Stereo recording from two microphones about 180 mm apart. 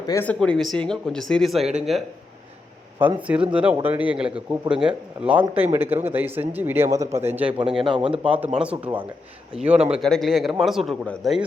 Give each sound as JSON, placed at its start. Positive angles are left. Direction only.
{"t": 0.1, "sound": "speech", "side_deg": 10}
{"t": 3.0, "sound": "a man's voice", "side_deg": -10}
{"t": 7.8, "sound": "a man's voice", "side_deg": -30}
{"t": 8.5, "sound": "a man's voice", "side_deg": -5}